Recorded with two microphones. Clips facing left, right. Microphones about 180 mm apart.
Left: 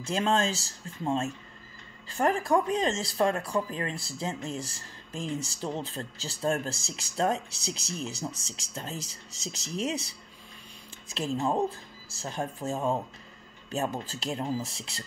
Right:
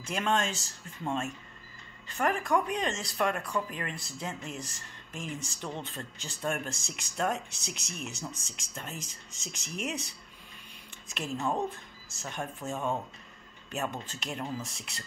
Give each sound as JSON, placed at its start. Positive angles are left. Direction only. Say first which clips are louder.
{"t": 0.0, "sound": "speech", "louder": "left 3 dB", "side_deg": 30}
{"t": 11.1, "sound": "speech", "louder": "left 4 dB", "side_deg": 30}